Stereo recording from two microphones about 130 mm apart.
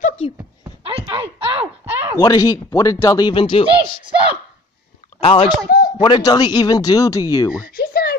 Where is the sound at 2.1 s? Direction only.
30° left (ahead or behind).